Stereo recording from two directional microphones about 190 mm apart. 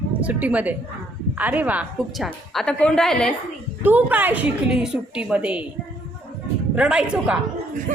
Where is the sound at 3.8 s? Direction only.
10° right (ahead or behind).